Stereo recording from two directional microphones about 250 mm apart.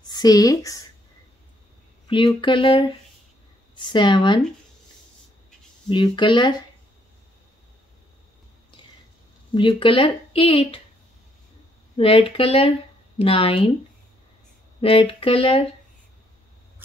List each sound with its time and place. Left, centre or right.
0.0 s speech: centre
2.0 s speech: centre
5.9 s speech: centre
9.5 s speech: centre
12.0 s speech: left
14.8 s speech: left